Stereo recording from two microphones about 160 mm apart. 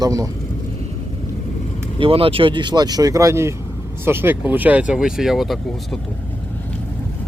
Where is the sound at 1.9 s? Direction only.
35° right (ahead or behind); by 6.0 s centre (ahead or behind).